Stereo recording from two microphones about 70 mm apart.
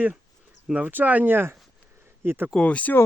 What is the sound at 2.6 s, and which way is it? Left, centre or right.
Speech, centre.